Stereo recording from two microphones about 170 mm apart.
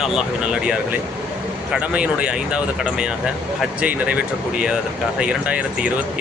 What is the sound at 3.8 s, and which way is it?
Speech, 10° right (ahead or behind).